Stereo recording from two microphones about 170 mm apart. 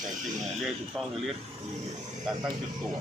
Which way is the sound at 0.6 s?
Centre (ahead or behind).